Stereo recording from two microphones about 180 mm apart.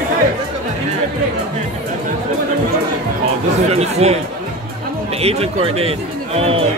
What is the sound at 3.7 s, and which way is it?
Chatter, 35° right (ahead or behind).